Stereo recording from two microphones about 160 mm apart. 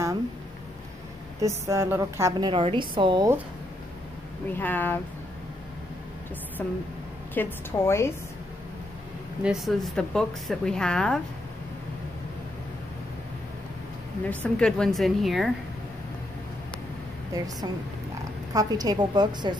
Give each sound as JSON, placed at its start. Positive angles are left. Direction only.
{"t": 1.4, "sound": "a woman's voice", "side_deg": -15}
{"t": 2.5, "sound": "a woman's voice", "side_deg": -30}
{"t": 4.6, "sound": "a woman's voice", "side_deg": 10}
{"t": 6.6, "sound": "a woman's voice", "side_deg": 10}
{"t": 9.4, "sound": "a woman's voice", "side_deg": -5}
{"t": 14.2, "sound": "a woman's voice", "side_deg": 10}
{"t": 18.5, "sound": "a woman's voice", "side_deg": -25}